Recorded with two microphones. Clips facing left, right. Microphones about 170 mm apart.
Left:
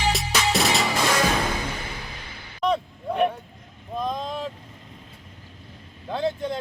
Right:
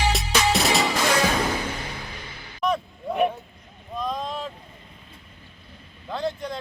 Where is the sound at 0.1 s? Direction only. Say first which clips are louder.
Right 1 dB; centre (ahead or behind).